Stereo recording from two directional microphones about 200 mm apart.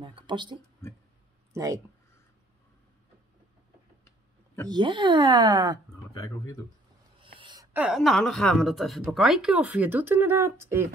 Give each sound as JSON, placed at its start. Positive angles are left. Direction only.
{"t": 0.0, "sound": "speech", "side_deg": -25}
{"t": 4.6, "sound": "speech", "side_deg": -25}
{"t": 6.1, "sound": "speech", "side_deg": 15}
{"t": 7.2, "sound": "a sound", "side_deg": -25}
{"t": 7.7, "sound": "speech", "side_deg": -5}